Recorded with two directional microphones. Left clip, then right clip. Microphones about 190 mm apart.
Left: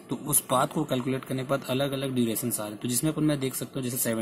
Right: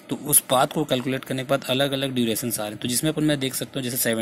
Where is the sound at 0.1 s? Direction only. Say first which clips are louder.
Right 5 dB; 15° right (ahead or behind).